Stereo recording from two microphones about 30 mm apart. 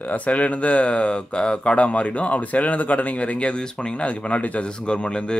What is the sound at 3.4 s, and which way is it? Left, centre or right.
Speech, left.